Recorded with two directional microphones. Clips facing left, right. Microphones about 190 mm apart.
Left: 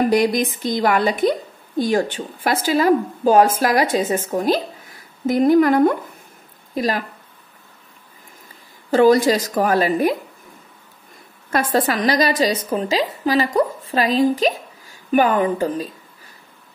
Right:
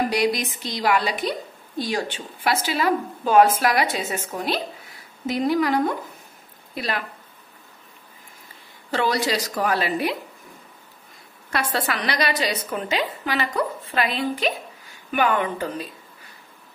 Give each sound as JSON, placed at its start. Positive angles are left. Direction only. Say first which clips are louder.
{"t": 0.1, "sound": "a woman's voice", "louder": "left 5 dB", "side_deg": 50}
{"t": 6.7, "sound": "a woman's voice", "louder": "left 7 dB", "side_deg": 40}
{"t": 8.9, "sound": "a woman's voice", "louder": "left 10 dB", "side_deg": 45}
{"t": 11.5, "sound": "a woman's voice", "louder": "left 7 dB", "side_deg": 45}